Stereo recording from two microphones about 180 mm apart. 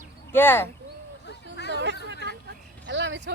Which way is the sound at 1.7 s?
75° right (ahead or behind).